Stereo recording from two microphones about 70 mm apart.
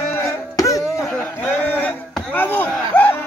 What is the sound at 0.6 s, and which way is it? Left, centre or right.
Music, left.